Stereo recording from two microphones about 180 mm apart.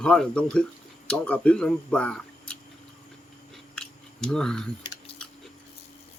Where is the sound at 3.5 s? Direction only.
5° left (ahead or behind).